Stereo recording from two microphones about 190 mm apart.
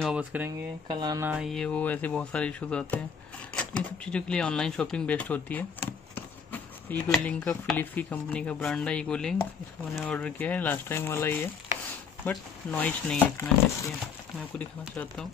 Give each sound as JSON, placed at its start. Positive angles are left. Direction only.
{"t": 0.0, "sound": "speech", "side_deg": -5}
{"t": 0.8, "sound": "speech", "side_deg": -20}
{"t": 1.3, "sound": "speech", "side_deg": 0}
{"t": 14.6, "sound": "speech", "side_deg": 10}